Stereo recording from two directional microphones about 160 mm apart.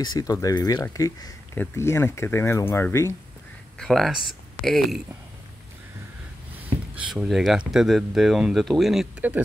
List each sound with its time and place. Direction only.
0.1 s speech: 20° left (ahead or behind)
3.7 s speech: 5° left (ahead or behind)
7.0 s speech: 5° right (ahead or behind)